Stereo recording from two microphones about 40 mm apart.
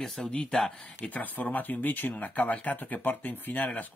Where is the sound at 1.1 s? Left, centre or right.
Left.